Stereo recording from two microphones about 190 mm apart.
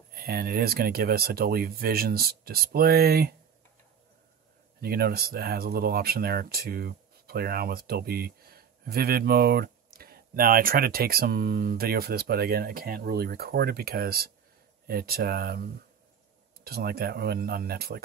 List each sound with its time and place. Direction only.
0.1 s speech: 55° right (ahead or behind)
4.8 s speech: 55° right (ahead or behind)